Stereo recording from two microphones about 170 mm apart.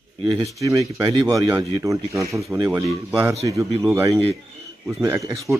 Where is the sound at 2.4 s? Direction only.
5° right (ahead or behind).